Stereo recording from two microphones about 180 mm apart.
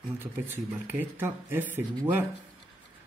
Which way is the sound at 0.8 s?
10° right (ahead or behind).